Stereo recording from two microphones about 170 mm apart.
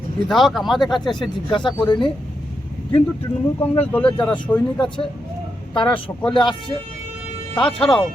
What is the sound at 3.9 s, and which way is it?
Speech, 5° left (ahead or behind).